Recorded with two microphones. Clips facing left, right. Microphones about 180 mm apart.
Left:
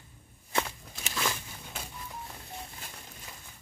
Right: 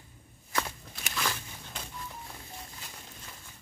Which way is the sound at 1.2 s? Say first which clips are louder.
Left 1 dB; 10° left (ahead or behind).